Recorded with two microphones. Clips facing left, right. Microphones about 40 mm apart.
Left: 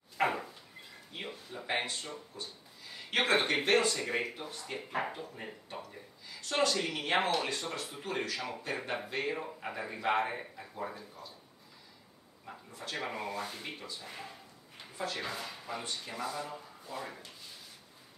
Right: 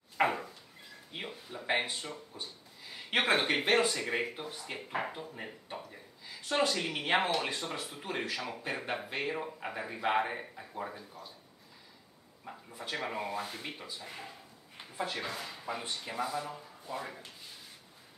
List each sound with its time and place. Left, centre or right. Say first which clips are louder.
0.2 s a sound: right 2 dB; centre
1.1 s speech: even; centre
2.3 s a sound: even; centre
3.4 s speech: even; centre
7.4 s speech: even; centre
8.6 s speech: right 1 dB; centre
12.5 s a sound: right 1 dB; centre
13.1 s speech: right 1 dB; centre
14.0 s speech: even; centre
14.8 s a sound: right 1 dB; centre
15.2 s speech: even; centre
15.6 s speech: right 2 dB; centre